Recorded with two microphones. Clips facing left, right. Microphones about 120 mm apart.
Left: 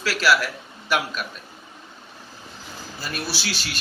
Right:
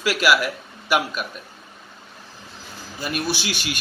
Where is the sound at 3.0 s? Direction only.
15° right (ahead or behind).